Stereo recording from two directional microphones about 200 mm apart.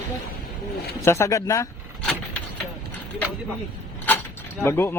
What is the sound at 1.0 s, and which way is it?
Speech, 15° left (ahead or behind).